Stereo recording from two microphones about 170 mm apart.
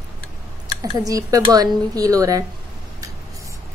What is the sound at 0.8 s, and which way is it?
A woman's voice, 20° right (ahead or behind).